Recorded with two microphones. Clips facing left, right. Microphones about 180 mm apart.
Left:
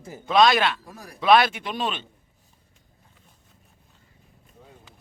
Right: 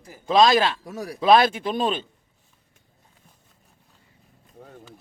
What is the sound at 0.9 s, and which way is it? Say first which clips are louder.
Speech: right 10 dB; 80° right.